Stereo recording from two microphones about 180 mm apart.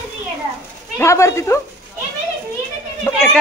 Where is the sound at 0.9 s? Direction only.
15° left (ahead or behind).